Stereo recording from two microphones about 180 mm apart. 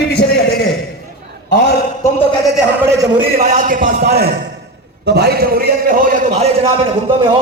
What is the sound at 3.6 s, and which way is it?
Speech, 50° right (ahead or behind).